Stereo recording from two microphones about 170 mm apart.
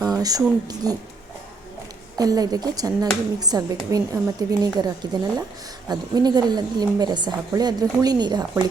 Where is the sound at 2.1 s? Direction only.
20° right (ahead or behind).